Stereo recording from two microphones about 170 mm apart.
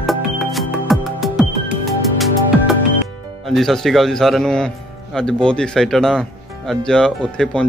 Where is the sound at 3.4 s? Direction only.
Centre (ahead or behind).